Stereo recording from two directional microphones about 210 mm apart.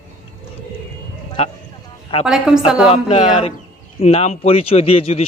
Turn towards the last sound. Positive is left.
turn(degrees=30)  # may be behind; listen again after turning